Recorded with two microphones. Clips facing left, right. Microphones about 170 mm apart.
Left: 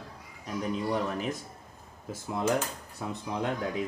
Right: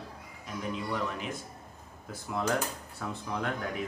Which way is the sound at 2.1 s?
20° left (ahead or behind).